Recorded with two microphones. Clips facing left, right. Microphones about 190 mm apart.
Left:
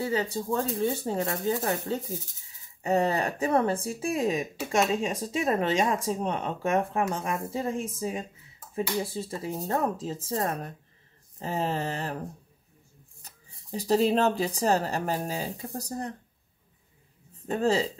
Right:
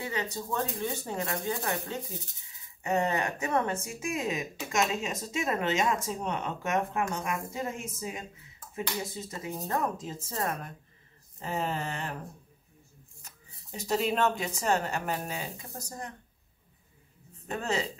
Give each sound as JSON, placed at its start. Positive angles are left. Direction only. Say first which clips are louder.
{"t": 0.0, "sound": "speech", "louder": "left 6 dB", "side_deg": 30}
{"t": 13.2, "sound": "speech", "louder": "left 2 dB", "side_deg": 35}
{"t": 17.5, "sound": "speech", "louder": "left 7 dB", "side_deg": 30}